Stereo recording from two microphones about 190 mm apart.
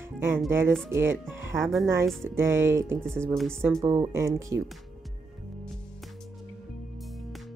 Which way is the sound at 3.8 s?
20° right (ahead or behind).